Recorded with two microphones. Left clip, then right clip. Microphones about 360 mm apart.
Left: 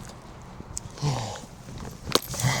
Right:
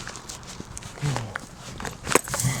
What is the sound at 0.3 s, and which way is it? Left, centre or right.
Horse, right.